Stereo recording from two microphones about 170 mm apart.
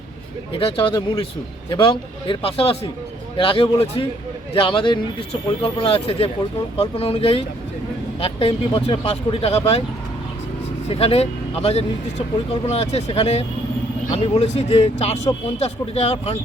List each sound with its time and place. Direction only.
0.6 s speech: 30° left (ahead or behind)
10.8 s speech: 35° left (ahead or behind)